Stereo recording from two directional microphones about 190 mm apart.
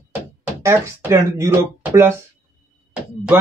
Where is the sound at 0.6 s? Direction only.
15° right (ahead or behind).